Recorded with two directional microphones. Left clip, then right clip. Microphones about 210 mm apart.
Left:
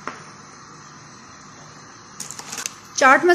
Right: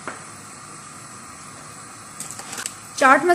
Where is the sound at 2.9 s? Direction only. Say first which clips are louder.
Left 1 dB; 15° left (ahead or behind).